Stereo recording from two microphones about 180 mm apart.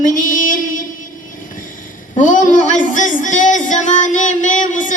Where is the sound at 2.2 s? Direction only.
45° left (ahead or behind).